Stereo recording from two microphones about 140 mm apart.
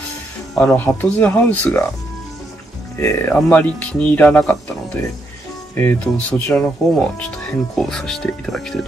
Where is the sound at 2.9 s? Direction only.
15° left (ahead or behind).